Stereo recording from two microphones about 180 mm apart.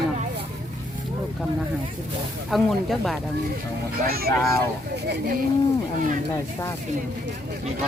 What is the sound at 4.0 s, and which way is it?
Speech, 55° right (ahead or behind).